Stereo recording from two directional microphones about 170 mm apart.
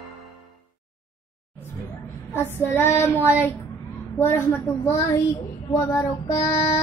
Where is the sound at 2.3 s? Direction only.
15° left (ahead or behind).